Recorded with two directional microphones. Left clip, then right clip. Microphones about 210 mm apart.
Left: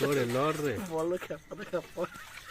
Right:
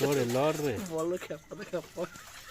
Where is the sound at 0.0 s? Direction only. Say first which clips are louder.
Right 1 dB; 5° right (ahead or behind).